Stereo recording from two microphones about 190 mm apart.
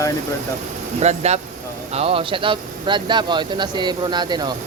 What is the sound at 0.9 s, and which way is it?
Speech, 35° right (ahead or behind).